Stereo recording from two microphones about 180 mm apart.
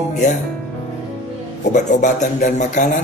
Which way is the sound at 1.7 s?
45° left (ahead or behind).